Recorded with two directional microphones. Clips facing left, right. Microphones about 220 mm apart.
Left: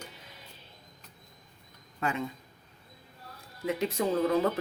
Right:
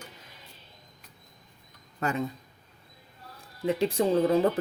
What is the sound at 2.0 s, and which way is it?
Speech, 40° right (ahead or behind).